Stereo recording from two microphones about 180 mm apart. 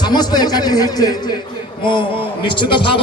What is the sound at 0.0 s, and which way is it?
A man's voice, 25° left (ahead or behind).